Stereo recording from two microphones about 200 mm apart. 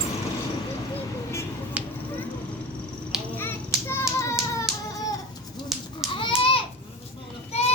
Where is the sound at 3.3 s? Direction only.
10° left (ahead or behind).